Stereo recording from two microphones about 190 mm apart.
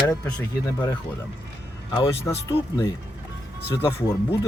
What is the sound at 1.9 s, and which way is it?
Speech, 25° left (ahead or behind).